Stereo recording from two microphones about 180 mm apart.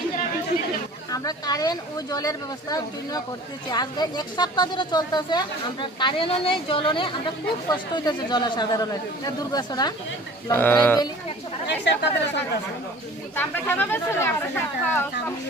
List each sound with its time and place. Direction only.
1.1 s speech: 20° left (ahead or behind)
10.5 s speech: 10° left (ahead or behind)
11.6 s speech: 75° left (ahead or behind)
13.3 s speech: 10° left (ahead or behind)